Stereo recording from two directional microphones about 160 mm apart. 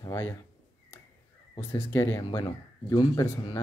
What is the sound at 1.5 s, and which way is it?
Speech, 20° left (ahead or behind).